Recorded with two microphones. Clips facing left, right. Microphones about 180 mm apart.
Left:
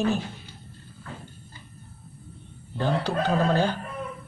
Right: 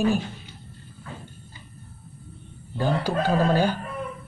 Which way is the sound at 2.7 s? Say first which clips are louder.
Right 1 dB; 10° right (ahead or behind).